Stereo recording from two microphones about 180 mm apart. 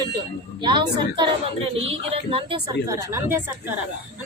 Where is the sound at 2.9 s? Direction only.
15° right (ahead or behind).